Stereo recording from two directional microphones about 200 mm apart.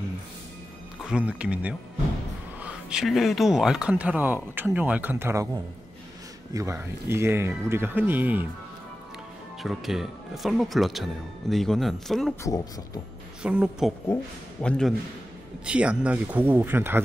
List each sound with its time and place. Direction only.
1.0 s speech: 5° right (ahead or behind)
9.6 s speech: centre (ahead or behind)
12.4 s speech: 20° left (ahead or behind)
13.4 s speech: 5° right (ahead or behind)
14.0 s speech: 10° left (ahead or behind); by 17.0 s 10° right (ahead or behind)